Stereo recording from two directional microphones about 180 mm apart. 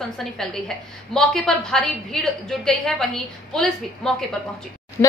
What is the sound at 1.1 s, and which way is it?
A woman's voice, centre (ahead or behind).